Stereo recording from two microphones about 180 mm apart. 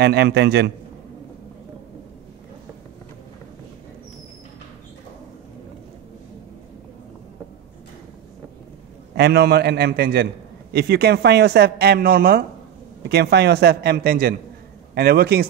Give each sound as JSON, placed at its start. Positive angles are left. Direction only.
{"t": 0.0, "sound": "speech", "side_deg": -65}
{"t": 9.1, "sound": "speech", "side_deg": -65}
{"t": 13.1, "sound": "speech", "side_deg": -70}